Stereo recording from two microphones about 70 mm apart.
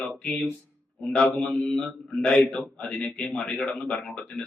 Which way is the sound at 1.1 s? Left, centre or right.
Centre.